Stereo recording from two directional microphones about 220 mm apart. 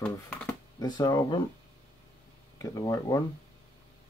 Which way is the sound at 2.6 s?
15° left (ahead or behind).